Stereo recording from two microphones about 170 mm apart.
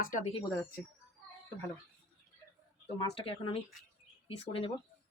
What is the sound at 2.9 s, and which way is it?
Speech, 35° left (ahead or behind).